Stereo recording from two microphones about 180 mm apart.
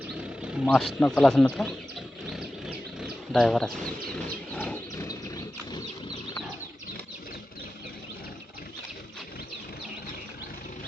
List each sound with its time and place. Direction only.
0.1 s speech: 5° right (ahead or behind)
2.3 s roaring cats: 5° right (ahead or behind)
5.0 s horse: 20° left (ahead or behind)